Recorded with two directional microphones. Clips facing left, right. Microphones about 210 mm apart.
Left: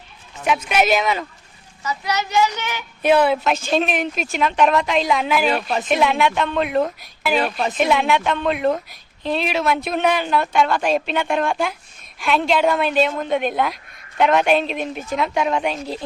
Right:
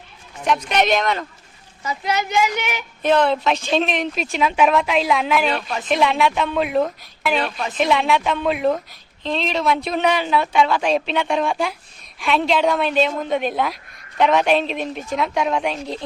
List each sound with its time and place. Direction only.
0.4 s speech: 5° left (ahead or behind)
1.8 s a woman's voice: 25° right (ahead or behind)
3.0 s speech: 10° left (ahead or behind)
8.9 s speech: 10° left (ahead or behind)